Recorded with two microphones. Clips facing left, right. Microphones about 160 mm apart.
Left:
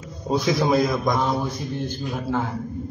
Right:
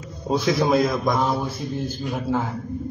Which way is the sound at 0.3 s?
Centre (ahead or behind).